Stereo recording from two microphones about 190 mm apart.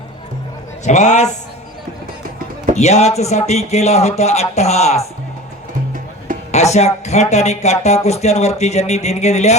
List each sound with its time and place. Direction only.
0.9 s speech: 40° left (ahead or behind)
2.7 s speech: 35° left (ahead or behind)
6.5 s speech: 35° left (ahead or behind)